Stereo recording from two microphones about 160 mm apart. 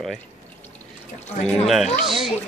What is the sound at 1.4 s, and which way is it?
Speech, centre (ahead or behind).